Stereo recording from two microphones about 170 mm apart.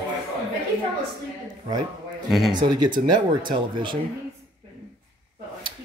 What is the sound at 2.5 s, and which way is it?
Speech, 25° right (ahead or behind).